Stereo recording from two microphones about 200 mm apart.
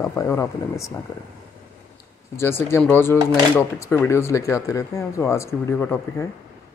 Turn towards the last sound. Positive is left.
turn(degrees=15)  # may be behind; listen again after turning